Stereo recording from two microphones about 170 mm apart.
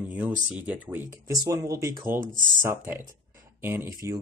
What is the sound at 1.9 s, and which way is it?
Speech, 55° right (ahead or behind).